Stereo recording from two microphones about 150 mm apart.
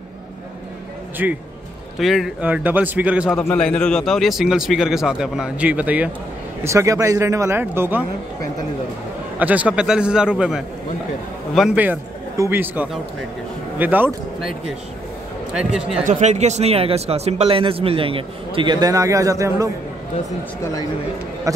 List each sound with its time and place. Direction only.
1.2 s a man's voice: 10° right (ahead or behind)
3.5 s speech: 5° left (ahead or behind); by 8.0 s 15° right (ahead or behind)
9.4 s a man's voice: 10° right (ahead or behind)
15.5 s speech: 5° right (ahead or behind)
16.1 s speech: 50° right (ahead or behind); by 19.7 s 20° right (ahead or behind)